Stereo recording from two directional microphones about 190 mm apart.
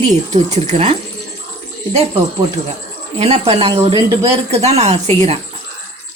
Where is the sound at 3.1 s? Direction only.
35° right (ahead or behind).